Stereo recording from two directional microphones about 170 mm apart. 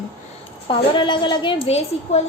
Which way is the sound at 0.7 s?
30° left (ahead or behind).